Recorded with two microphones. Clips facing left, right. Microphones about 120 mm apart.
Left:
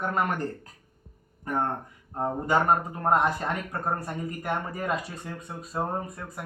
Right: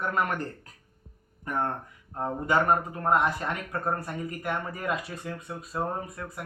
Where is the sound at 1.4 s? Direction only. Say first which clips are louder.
Left 2 dB; 35° left (ahead or behind).